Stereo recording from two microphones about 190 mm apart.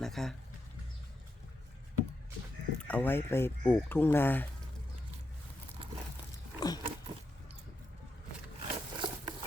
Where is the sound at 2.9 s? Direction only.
10° left (ahead or behind).